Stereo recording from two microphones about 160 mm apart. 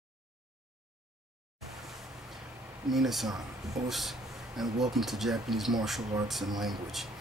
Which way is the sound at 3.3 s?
25° right (ahead or behind).